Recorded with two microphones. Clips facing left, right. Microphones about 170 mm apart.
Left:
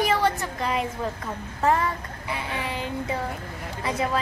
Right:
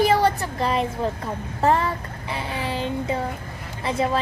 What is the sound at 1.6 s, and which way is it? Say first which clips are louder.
Speech: right 2 dB; 30° right (ahead or behind).